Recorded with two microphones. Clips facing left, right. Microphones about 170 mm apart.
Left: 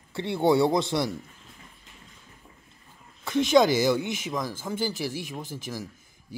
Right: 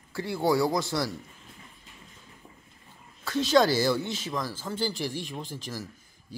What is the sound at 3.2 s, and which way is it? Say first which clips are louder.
A man's voice: left 2 dB; 20° left (ahead or behind).